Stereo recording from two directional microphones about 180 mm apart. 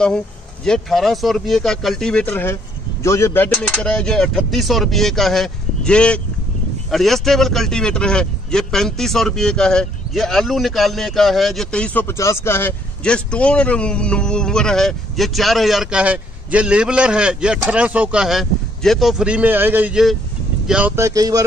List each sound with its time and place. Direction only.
0.7 s speech: centre (ahead or behind); by 21.5 s 20° right (ahead or behind)